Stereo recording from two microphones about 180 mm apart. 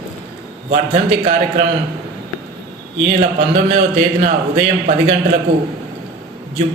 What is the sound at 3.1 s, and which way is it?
A man's voice, 40° right (ahead or behind).